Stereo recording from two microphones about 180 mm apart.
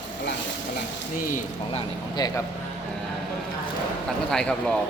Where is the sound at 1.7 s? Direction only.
35° left (ahead or behind).